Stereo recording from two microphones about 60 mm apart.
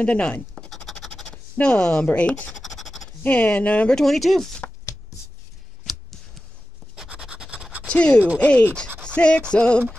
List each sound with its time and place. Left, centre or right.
0.0 s speech: centre
0.7 s scratch: centre
1.0 s speech: centre
2.6 s scratch: centre
3.3 s speech: left
3.9 s speech: centre
5.9 s a sound: centre
7.3 s scratch: centre
7.8 s speech: centre
9.5 s music: centre